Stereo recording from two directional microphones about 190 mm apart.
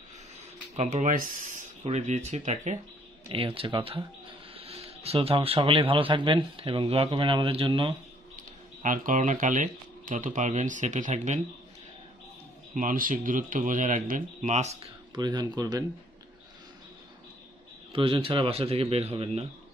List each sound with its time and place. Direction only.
0.7 s speech: 40° right (ahead or behind)
8.8 s speech: 45° right (ahead or behind)
12.7 s speech: 45° right (ahead or behind)
15.1 s speech: 20° right (ahead or behind)
17.9 s speech: 30° right (ahead or behind)